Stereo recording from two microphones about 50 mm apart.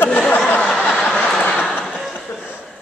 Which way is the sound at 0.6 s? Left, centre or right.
Centre.